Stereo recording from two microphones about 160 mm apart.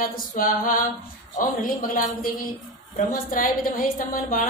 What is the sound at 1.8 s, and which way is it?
A woman's voice, 60° left (ahead or behind).